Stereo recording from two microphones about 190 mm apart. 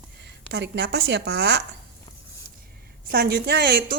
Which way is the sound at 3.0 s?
50° right (ahead or behind).